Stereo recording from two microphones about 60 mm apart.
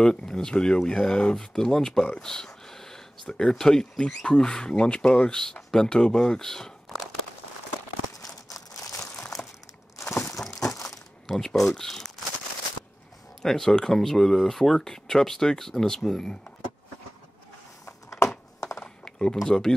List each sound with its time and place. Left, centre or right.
0.0 s speech: centre
8.2 s crumpling: left
9.4 s crumpling: centre
10.5 s crumpling: left
11.2 s speech: centre
13.4 s speech: centre
17.8 s a sound: left
18.8 s typing: centre
19.4 s speech: centre